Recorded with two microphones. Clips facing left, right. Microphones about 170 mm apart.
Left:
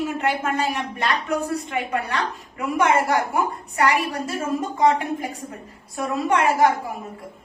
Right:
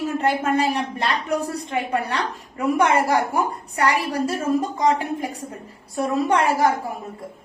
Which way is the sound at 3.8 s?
35° right (ahead or behind).